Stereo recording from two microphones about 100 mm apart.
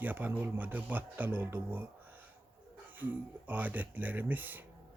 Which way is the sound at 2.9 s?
15° right (ahead or behind).